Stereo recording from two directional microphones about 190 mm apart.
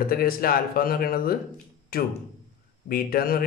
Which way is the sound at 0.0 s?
50° left (ahead or behind).